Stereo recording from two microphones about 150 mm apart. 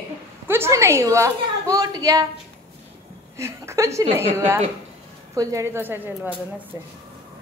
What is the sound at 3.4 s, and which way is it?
Speech, 20° right (ahead or behind).